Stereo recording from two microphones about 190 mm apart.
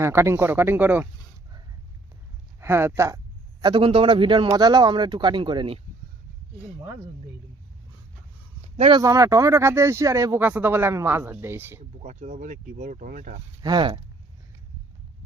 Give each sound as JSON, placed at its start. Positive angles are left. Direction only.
{"t": 0.0, "sound": "speech", "side_deg": -15}
{"t": 2.6, "sound": "speech", "side_deg": -15}
{"t": 3.6, "sound": "a man's voice", "side_deg": -25}
{"t": 8.6, "sound": "a sound", "side_deg": -30}
{"t": 9.0, "sound": "speech", "side_deg": -15}
{"t": 12.0, "sound": "speech", "side_deg": -40}
{"t": 13.6, "sound": "a man's voice", "side_deg": -20}